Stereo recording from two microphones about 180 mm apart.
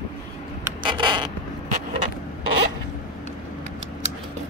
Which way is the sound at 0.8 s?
25° right (ahead or behind).